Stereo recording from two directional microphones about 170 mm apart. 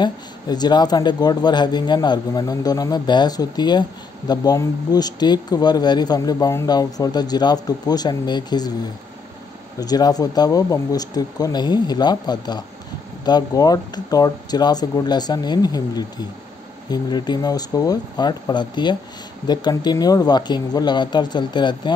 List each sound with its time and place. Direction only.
0.0 s speech: 25° left (ahead or behind)
9.8 s speech: 25° left (ahead or behind)